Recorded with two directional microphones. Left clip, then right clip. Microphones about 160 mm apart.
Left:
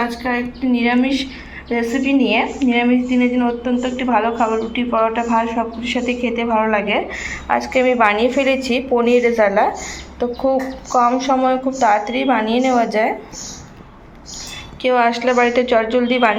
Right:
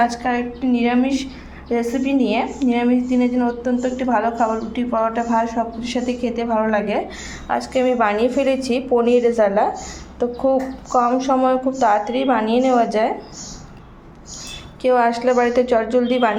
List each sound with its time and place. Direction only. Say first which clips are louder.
0.2 s a woman's voice: even; 15° right (ahead or behind)
14.8 s a woman's voice: left 1 dB; 15° right (ahead or behind)